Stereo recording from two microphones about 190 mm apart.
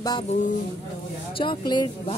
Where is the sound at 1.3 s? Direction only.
25° left (ahead or behind).